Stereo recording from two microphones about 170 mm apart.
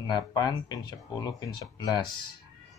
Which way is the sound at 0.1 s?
25° left (ahead or behind).